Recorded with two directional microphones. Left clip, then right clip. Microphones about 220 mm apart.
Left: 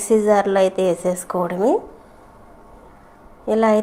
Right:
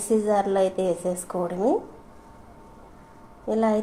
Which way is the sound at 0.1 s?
20° left (ahead or behind).